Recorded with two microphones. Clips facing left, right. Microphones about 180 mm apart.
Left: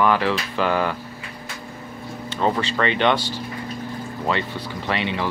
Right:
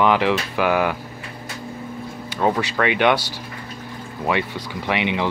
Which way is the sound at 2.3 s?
10° right (ahead or behind).